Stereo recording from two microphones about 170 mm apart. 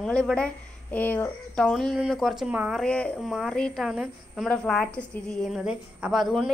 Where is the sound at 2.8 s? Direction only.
5° left (ahead or behind).